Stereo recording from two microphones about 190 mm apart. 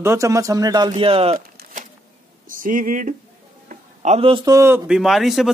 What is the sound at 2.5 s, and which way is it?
A man's voice, 45° right (ahead or behind).